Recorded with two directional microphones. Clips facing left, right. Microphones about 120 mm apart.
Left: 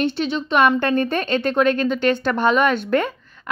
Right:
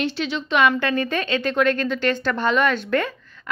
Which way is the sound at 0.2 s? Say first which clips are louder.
Left 1 dB; 45° left (ahead or behind).